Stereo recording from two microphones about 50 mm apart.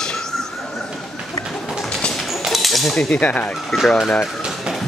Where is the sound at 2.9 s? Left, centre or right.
Centre.